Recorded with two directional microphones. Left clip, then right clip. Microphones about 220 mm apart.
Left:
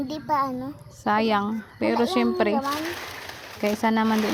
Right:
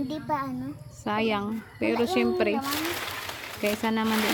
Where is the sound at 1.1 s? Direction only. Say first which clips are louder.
Left 5 dB; 30° left (ahead or behind).